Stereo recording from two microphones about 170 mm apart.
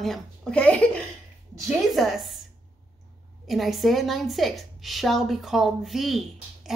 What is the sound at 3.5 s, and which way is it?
Speech, centre (ahead or behind).